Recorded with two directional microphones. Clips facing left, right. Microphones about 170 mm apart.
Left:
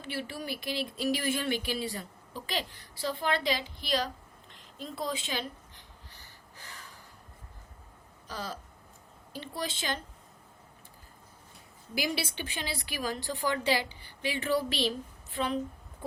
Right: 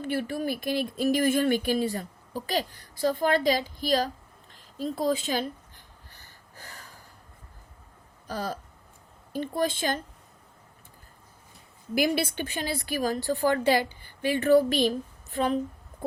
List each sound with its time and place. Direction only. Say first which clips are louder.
0.0 s speech: right 8 dB; 50° right (ahead or behind)
4.5 s a sound: right 8 dB; 40° right (ahead or behind)
8.3 s speech: right 6 dB; 50° right (ahead or behind)
11.9 s speech: right 7 dB; 55° right (ahead or behind)